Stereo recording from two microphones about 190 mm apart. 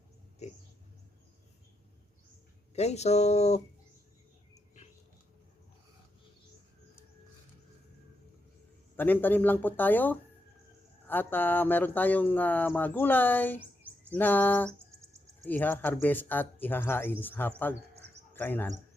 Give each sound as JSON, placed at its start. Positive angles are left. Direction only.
{"t": 0.4, "sound": "speech", "side_deg": 35}
{"t": 2.7, "sound": "speech", "side_deg": 35}
{"t": 9.0, "sound": "speech", "side_deg": 10}